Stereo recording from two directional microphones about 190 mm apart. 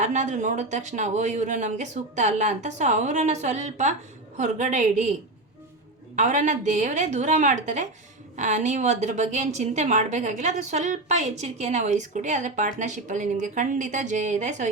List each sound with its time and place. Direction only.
0.0 s a woman's voice: 40° right (ahead or behind)
6.1 s a woman's voice: 40° right (ahead or behind)